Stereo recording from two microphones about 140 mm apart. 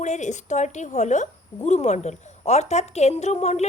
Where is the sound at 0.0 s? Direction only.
55° left (ahead or behind).